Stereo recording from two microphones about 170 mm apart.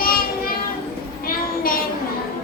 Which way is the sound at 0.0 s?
60° left (ahead or behind).